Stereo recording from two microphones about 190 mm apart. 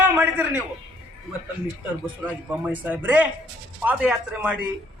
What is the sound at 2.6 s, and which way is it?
A man's voice, 10° right (ahead or behind).